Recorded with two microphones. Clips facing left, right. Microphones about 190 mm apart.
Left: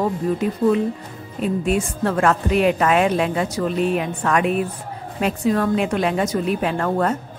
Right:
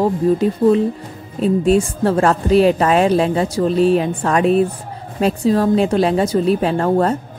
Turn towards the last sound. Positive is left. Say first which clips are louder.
# right 5 dB
turn(degrees=-30)  # may be behind; listen again after turning